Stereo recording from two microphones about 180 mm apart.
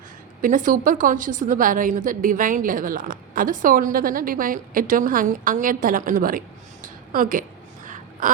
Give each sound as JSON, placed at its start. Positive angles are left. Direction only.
{"t": 0.4, "sound": "a woman's voice", "side_deg": -50}
{"t": 6.8, "sound": "a sound", "side_deg": -50}
{"t": 8.2, "sound": "crow", "side_deg": -45}